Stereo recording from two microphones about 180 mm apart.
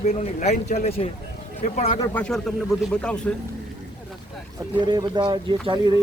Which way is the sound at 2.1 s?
5° left (ahead or behind).